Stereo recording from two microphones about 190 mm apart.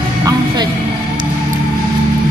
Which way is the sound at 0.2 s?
20° right (ahead or behind).